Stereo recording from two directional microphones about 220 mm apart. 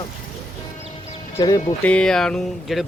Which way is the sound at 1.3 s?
20° left (ahead or behind).